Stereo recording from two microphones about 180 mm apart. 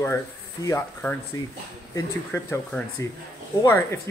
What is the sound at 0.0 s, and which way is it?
A man's voice, 15° left (ahead or behind).